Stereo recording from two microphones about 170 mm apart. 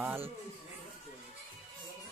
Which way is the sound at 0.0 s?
15° right (ahead or behind).